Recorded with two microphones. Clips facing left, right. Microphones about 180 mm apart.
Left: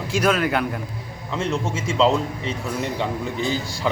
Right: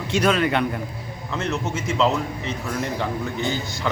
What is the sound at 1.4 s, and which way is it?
A man's voice, 30° left (ahead or behind).